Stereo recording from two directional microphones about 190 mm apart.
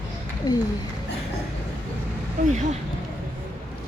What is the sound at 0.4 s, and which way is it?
Speech, 20° left (ahead or behind).